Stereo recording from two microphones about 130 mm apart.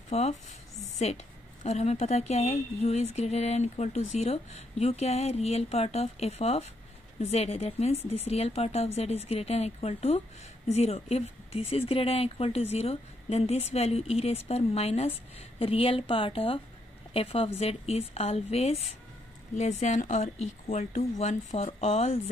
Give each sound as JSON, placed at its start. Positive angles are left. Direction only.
{"t": 0.1, "sound": "a woman's voice", "side_deg": 60}
{"t": 19.5, "sound": "a woman's voice", "side_deg": 60}